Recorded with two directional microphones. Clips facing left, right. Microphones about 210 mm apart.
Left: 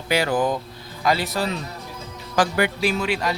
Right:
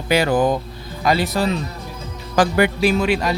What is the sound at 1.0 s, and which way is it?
Speech, 20° right (ahead or behind).